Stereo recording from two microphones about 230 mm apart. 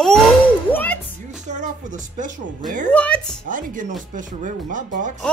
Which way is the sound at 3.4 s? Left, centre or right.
Right.